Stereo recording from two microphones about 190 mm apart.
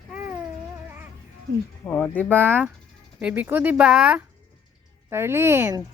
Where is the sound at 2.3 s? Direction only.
10° right (ahead or behind).